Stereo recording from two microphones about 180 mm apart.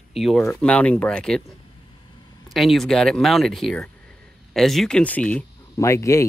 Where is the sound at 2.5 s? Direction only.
Centre (ahead or behind).